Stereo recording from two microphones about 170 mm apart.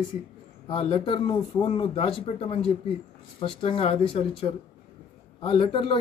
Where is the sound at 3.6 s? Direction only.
35° left (ahead or behind).